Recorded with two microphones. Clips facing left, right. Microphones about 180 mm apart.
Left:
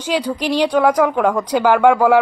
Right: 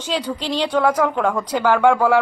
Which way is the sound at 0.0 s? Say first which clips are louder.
Left 4 dB; 10° left (ahead or behind).